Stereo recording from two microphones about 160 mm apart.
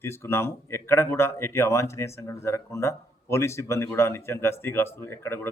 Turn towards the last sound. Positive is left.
turn(degrees=15)  # may be behind; listen again after turning